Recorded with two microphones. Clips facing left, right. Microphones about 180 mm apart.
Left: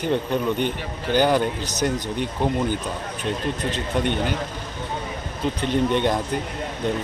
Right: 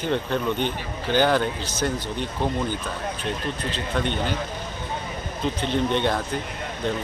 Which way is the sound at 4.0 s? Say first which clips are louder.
Left 3 dB; 15° left (ahead or behind).